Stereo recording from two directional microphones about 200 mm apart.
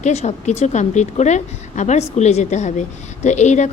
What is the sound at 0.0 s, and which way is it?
A woman's voice, 35° left (ahead or behind).